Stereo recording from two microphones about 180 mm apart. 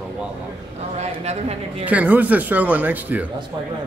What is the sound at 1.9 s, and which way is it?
Speech, 10° right (ahead or behind).